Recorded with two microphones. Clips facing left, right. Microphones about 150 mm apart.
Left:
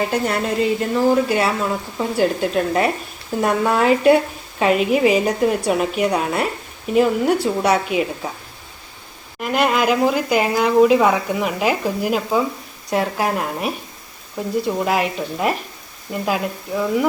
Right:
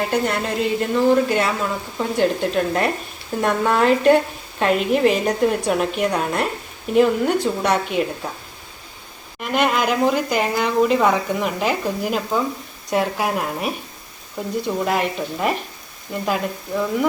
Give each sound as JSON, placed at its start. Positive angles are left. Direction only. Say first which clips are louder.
{"t": 0.0, "sound": "speech", "louder": "left 1 dB", "side_deg": 0}
{"t": 9.4, "sound": "speech", "louder": "left 2 dB", "side_deg": 0}